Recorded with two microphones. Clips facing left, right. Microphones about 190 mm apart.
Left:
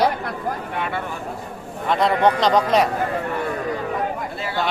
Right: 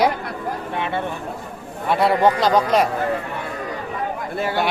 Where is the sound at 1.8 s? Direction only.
5° right (ahead or behind).